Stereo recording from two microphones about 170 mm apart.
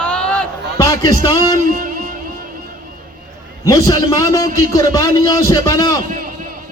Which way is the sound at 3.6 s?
20° left (ahead or behind).